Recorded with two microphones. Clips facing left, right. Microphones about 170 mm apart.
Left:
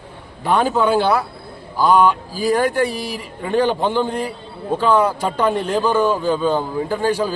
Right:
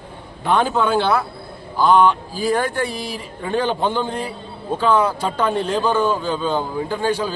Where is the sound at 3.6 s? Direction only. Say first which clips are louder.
Left 2 dB; 10° left (ahead or behind).